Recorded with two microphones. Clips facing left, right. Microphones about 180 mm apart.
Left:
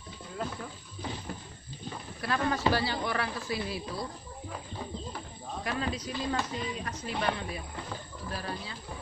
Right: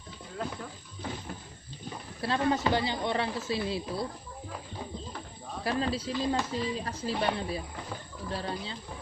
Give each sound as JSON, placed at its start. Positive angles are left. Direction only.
{"t": 2.2, "sound": "speech", "side_deg": -25}
{"t": 5.6, "sound": "speech", "side_deg": -35}